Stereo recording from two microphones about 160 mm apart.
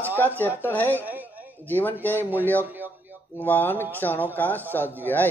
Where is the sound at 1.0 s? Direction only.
10° right (ahead or behind).